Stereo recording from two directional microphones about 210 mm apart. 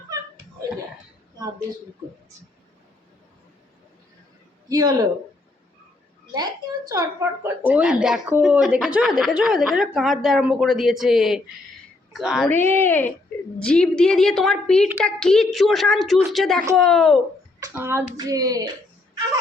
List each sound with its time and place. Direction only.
4.7 s speech: 20° right (ahead or behind)
6.3 s speech: 20° right (ahead or behind); by 12.5 s centre (ahead or behind)
12.5 s speech: 10° left (ahead or behind)
17.7 s speech: 10° right (ahead or behind)